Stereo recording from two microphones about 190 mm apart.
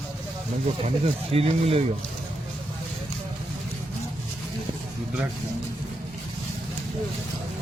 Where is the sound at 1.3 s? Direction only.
30° right (ahead or behind).